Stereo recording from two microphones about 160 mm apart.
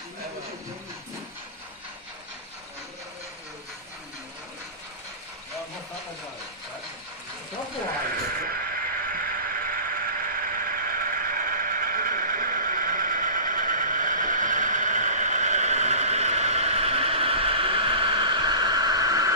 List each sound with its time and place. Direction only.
8.4 s neigh: 65° right (ahead or behind); by 19.3 s 20° right (ahead or behind)